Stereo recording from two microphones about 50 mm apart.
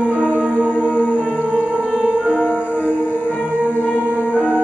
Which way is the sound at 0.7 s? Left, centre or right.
Left.